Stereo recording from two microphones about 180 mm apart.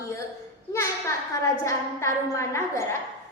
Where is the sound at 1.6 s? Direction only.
15° left (ahead or behind).